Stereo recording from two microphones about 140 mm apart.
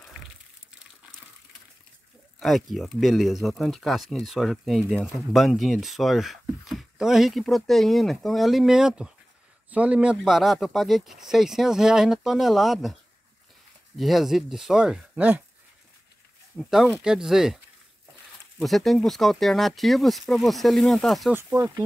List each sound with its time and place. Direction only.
2.4 s speech: centre (ahead or behind)
13.9 s speech: centre (ahead or behind)
16.5 s speech: centre (ahead or behind)
18.6 s speech: centre (ahead or behind)
21.3 s speech: 15° right (ahead or behind)